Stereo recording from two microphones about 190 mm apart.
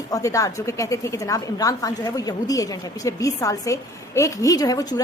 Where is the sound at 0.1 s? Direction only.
15° left (ahead or behind).